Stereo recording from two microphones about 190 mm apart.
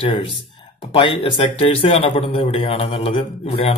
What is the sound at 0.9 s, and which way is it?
A man's voice, 25° left (ahead or behind).